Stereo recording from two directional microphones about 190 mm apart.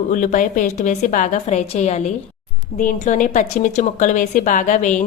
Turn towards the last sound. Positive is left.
turn(degrees=40)  # may be behind; listen again after turning